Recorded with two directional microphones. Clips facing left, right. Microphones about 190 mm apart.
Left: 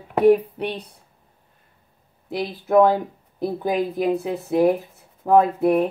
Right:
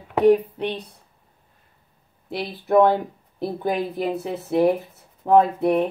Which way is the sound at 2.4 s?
Centre (ahead or behind).